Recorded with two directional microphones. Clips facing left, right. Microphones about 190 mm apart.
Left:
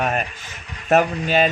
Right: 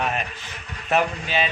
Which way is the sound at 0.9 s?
45° left (ahead or behind).